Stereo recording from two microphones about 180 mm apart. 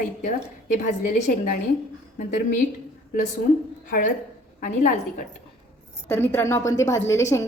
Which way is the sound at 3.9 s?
50° left (ahead or behind).